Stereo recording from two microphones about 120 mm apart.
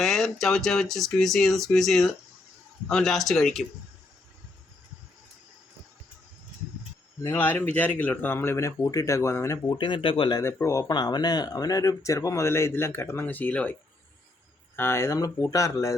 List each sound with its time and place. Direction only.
0.0 s speech: centre (ahead or behind)
7.2 s speech: 15° left (ahead or behind)
9.7 s speech: 40° left (ahead or behind)
10.4 s speech: 25° left (ahead or behind)
14.8 s speech: 20° left (ahead or behind)